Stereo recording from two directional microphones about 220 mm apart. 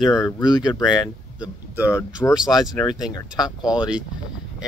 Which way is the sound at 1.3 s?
5° right (ahead or behind).